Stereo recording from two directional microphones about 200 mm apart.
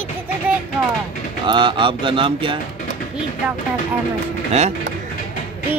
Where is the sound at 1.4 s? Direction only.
25° right (ahead or behind).